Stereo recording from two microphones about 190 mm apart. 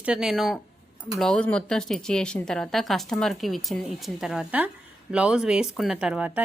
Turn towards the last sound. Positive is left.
turn(degrees=-5)  # may be behind; listen again after turning